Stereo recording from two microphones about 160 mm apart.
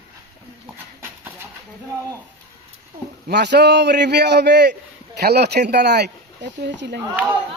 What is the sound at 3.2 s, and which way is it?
Speech, 90° right.